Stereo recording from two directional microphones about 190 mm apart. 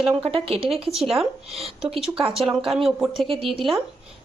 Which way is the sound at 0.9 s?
Centre (ahead or behind).